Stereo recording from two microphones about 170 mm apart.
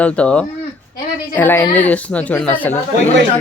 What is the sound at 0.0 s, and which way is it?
A woman's voice, 5° left (ahead or behind).